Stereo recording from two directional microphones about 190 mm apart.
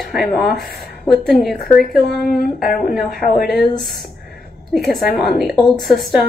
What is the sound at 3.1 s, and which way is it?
Speech, 50° left (ahead or behind).